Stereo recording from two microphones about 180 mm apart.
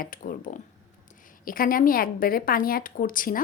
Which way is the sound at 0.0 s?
50° left (ahead or behind).